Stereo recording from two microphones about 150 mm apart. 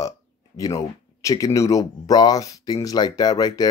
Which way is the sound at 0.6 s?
25° left (ahead or behind).